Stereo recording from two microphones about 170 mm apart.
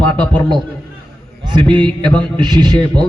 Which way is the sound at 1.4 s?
25° right (ahead or behind).